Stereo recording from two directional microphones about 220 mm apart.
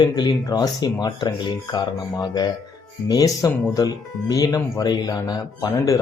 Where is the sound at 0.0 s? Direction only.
20° left (ahead or behind).